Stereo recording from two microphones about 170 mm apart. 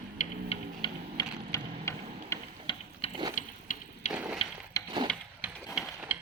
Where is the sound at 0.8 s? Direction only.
30° left (ahead or behind).